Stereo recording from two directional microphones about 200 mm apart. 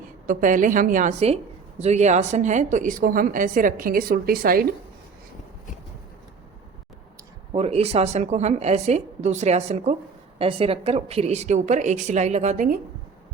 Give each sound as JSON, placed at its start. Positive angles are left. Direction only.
{"t": 0.3, "sound": "a woman's voice", "side_deg": -40}
{"t": 7.5, "sound": "a woman's voice", "side_deg": -30}